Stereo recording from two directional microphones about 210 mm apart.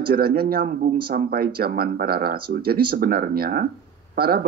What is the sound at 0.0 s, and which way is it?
A man's voice, 45° right (ahead or behind).